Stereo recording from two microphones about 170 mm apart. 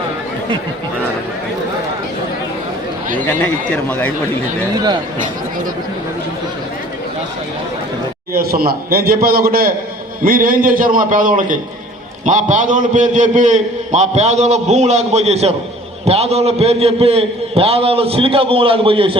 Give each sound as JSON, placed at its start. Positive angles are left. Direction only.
{"t": 4.7, "sound": "speech", "side_deg": -25}
{"t": 8.3, "sound": "a man's voice", "side_deg": -60}